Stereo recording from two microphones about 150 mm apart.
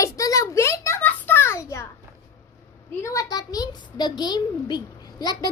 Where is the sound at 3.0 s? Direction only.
20° left (ahead or behind).